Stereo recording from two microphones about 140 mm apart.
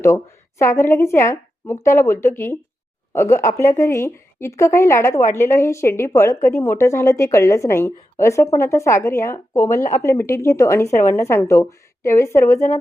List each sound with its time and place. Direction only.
0.6 s speech: 20° left (ahead or behind)